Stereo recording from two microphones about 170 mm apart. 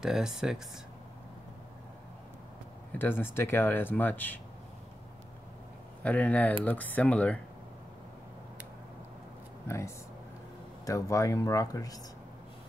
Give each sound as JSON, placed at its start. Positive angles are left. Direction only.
{"t": 0.0, "sound": "speech", "side_deg": -5}
{"t": 2.9, "sound": "speech", "side_deg": 10}
{"t": 6.0, "sound": "speech", "side_deg": 10}
{"t": 9.7, "sound": "speech", "side_deg": 15}